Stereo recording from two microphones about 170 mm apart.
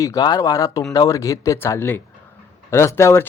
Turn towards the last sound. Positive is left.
turn(degrees=15)  # may be behind; listen again after turning